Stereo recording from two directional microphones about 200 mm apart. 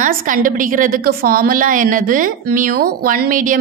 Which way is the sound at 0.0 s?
45° right (ahead or behind).